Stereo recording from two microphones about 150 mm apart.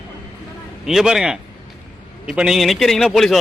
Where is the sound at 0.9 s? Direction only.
5° right (ahead or behind).